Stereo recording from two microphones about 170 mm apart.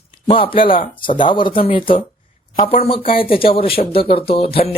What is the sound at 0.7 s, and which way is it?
Speech, 30° left (ahead or behind).